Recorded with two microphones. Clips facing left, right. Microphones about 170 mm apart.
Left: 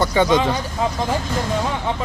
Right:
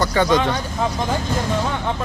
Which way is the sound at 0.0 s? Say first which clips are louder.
Left 1 dB; 15° left (ahead or behind).